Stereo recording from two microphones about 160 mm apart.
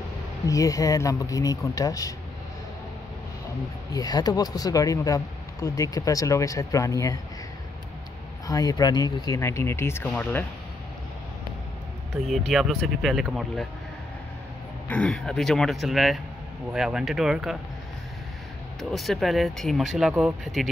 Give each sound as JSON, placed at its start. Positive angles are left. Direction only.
{"t": 0.5, "sound": "speech", "side_deg": 20}
{"t": 3.9, "sound": "speech", "side_deg": 25}
{"t": 8.5, "sound": "speech", "side_deg": 25}
{"t": 12.1, "sound": "speech", "side_deg": 0}
{"t": 14.9, "sound": "speech", "side_deg": 5}
{"t": 18.8, "sound": "speech", "side_deg": 0}